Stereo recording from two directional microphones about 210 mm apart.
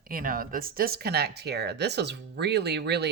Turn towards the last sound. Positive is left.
turn(degrees=-55)  # may be behind; listen again after turning